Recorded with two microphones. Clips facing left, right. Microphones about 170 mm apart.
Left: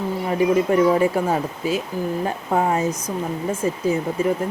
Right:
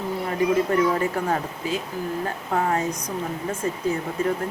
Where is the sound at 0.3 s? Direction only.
15° left (ahead or behind).